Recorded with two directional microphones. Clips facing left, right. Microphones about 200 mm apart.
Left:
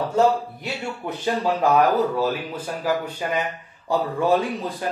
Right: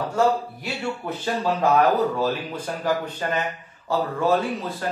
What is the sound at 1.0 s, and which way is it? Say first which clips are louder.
Speech: left 3 dB; 15° left (ahead or behind).